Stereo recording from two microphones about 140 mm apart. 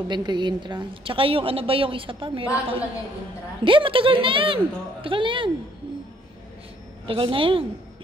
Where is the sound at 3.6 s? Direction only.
35° right (ahead or behind).